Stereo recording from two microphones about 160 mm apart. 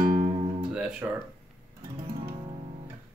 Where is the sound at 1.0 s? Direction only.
15° right (ahead or behind).